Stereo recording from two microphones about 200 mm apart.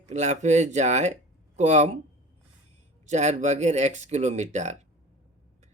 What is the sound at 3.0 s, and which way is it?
Speech, 35° right (ahead or behind).